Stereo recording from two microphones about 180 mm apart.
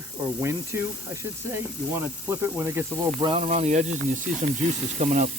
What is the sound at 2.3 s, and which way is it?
Speech, 15° right (ahead or behind).